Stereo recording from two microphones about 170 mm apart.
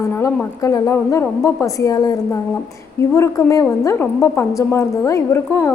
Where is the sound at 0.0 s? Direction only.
15° left (ahead or behind).